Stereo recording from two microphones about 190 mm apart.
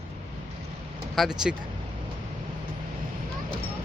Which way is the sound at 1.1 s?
Centre (ahead or behind).